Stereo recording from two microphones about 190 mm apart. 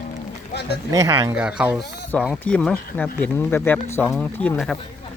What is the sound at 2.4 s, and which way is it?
Speech, 5° left (ahead or behind).